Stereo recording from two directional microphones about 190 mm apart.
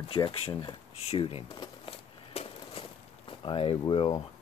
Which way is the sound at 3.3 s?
25° left (ahead or behind).